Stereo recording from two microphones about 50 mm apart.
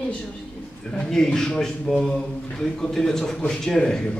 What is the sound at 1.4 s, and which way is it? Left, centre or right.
A man's voice, centre.